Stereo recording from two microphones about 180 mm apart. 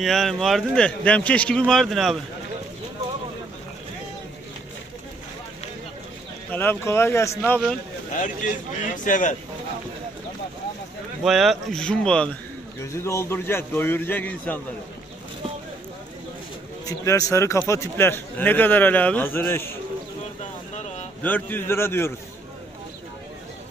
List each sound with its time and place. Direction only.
0.0 s speech: centre (ahead or behind)
6.5 s speech: 10° left (ahead or behind)
8.8 s speech: 45° left (ahead or behind)
11.2 s speech: centre (ahead or behind)
16.8 s speech: 20° left (ahead or behind)
21.2 s speech: 10° left (ahead or behind)